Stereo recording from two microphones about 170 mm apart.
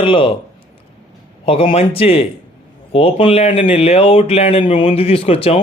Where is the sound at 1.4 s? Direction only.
35° left (ahead or behind).